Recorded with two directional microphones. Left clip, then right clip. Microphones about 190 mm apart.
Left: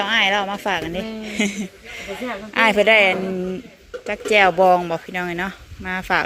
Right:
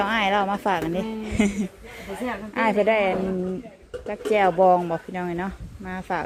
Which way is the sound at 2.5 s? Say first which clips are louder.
Left 7 dB; 5° right (ahead or behind).